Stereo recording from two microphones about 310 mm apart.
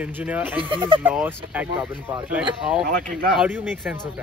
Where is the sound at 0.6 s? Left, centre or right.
Centre.